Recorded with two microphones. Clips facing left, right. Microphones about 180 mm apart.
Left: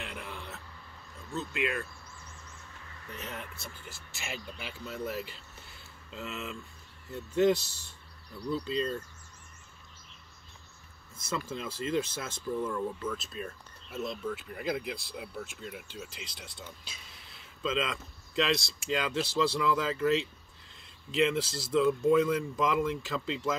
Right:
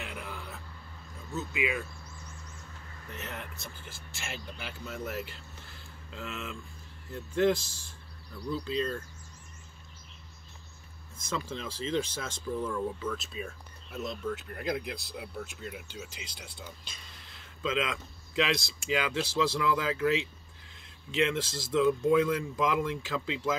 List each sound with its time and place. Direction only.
0.0 s a sound: centre (ahead or behind)
1.3 s speech: 5° right (ahead or behind)
3.2 s speech: centre (ahead or behind)
7.6 s speech: 70° left (ahead or behind)
8.5 s speech: centre (ahead or behind)
11.2 s speech: 5° left (ahead or behind)